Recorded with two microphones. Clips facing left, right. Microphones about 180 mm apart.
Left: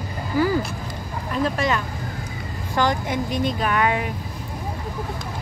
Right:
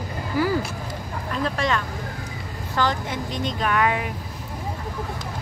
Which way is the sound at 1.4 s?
5° left (ahead or behind).